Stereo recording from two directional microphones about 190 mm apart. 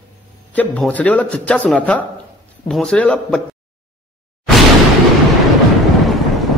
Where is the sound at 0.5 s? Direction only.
10° left (ahead or behind).